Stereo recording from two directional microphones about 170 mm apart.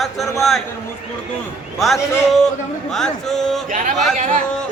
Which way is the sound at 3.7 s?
50° right (ahead or behind).